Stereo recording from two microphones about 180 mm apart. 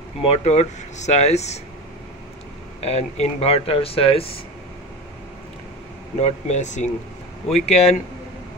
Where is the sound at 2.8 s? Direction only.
35° left (ahead or behind).